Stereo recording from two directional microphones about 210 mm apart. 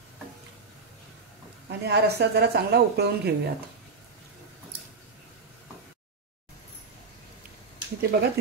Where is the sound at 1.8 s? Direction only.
50° right (ahead or behind).